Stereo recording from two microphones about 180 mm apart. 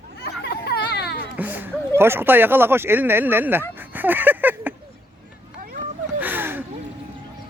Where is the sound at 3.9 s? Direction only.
10° right (ahead or behind).